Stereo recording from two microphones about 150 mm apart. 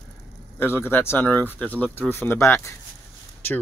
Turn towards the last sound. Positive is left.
turn(degrees=15)  # may be behind; listen again after turning